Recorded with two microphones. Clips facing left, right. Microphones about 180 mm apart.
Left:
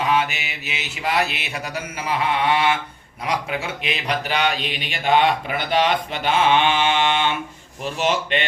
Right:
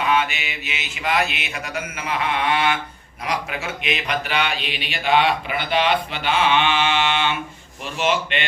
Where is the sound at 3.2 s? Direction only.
30° left (ahead or behind).